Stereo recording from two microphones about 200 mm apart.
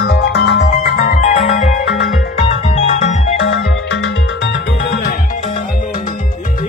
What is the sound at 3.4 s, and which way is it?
Music, 70° left (ahead or behind).